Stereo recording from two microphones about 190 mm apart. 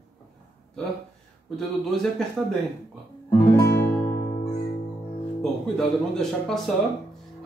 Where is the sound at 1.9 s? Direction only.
Centre (ahead or behind).